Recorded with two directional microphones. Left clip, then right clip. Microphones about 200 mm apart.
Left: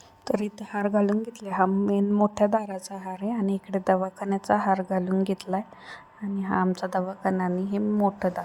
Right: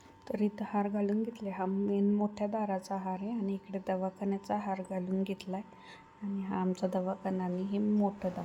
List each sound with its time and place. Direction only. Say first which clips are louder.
0.3 s a woman's voice: left 7 dB; 35° left (ahead or behind)